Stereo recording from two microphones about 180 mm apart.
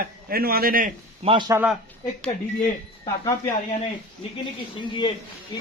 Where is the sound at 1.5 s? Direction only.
15° right (ahead or behind).